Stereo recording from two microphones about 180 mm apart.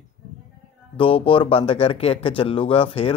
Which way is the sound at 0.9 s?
30° left (ahead or behind).